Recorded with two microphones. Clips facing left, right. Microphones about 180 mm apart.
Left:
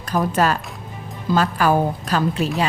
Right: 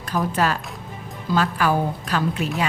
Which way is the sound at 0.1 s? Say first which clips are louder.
Left 3 dB; 45° left (ahead or behind).